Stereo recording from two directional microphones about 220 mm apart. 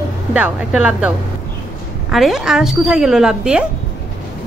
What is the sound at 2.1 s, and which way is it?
A woman's voice, centre (ahead or behind).